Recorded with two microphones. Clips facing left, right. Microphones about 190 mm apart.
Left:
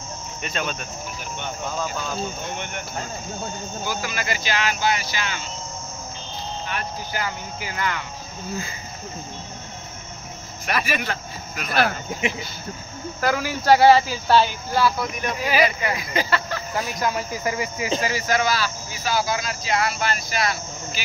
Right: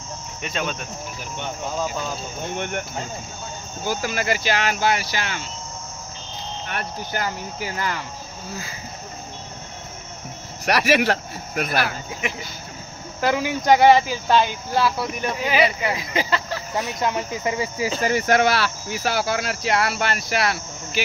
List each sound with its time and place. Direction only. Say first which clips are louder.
0.4 s cricket: right 1 dB; 10° right (ahead or behind)
2.5 s speech: right 5 dB; 55° right (ahead or behind)
3.8 s speech: right 5 dB; 45° right (ahead or behind)
7.2 s speech: right 3 dB; 35° right (ahead or behind)
10.6 s speech: right 7 dB; 75° right (ahead or behind)
13.2 s speech: right 2 dB; 20° right (ahead or behind)
18.0 s speech: right 7 dB; 60° right (ahead or behind)